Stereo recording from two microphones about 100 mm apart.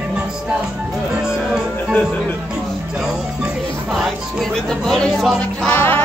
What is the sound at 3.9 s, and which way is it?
Music, centre (ahead or behind).